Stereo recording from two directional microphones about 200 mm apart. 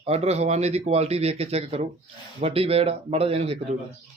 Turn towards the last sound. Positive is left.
turn(degrees=-30)  # may be behind; listen again after turning